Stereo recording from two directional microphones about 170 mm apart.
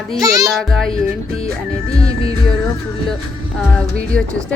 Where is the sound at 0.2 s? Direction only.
20° right (ahead or behind).